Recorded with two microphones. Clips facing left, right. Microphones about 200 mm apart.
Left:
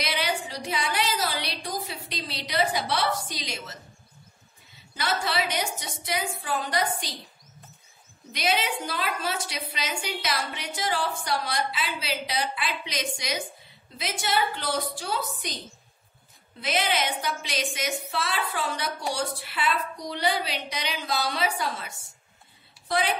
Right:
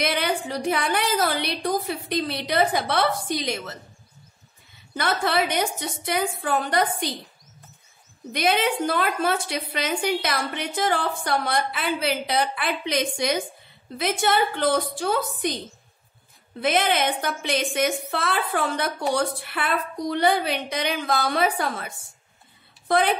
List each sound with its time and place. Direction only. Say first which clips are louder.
0.0 s a woman's voice: right 5 dB; 55° right (ahead or behind)
4.9 s a woman's voice: right 5 dB; 55° right (ahead or behind)
8.3 s a woman's voice: right 5 dB; 55° right (ahead or behind)
16.5 s a woman's voice: right 5 dB; 55° right (ahead or behind)